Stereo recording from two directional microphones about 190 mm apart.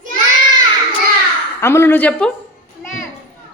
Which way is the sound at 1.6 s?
15° left (ahead or behind).